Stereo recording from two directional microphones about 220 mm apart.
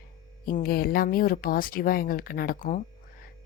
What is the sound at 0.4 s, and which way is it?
A woman's voice, 40° left (ahead or behind).